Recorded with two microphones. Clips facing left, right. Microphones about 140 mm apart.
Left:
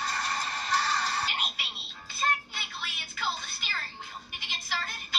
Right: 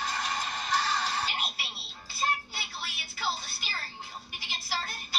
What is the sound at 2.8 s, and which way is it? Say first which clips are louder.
Music: left 1 dB; 35° right (ahead or behind).